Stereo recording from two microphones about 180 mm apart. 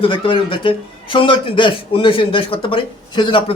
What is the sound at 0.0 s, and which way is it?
Speech, 30° left (ahead or behind).